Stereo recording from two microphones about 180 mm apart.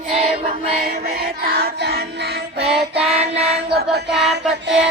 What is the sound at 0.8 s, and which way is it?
Child singing, 60° right (ahead or behind).